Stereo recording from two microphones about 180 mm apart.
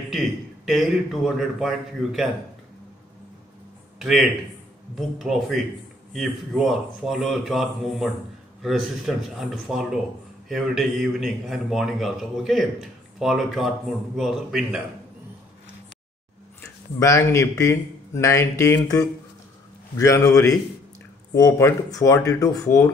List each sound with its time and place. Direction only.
0.1 s speech: centre (ahead or behind)
4.0 s a man's voice: centre (ahead or behind)
16.6 s speech: 15° left (ahead or behind)